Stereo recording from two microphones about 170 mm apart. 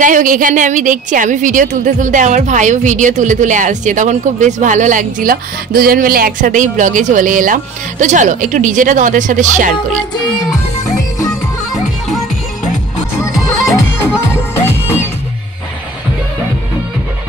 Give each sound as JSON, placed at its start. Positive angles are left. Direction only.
{"t": 0.0, "sound": "a woman's voice", "side_deg": -50}
{"t": 13.2, "sound": "music", "side_deg": 20}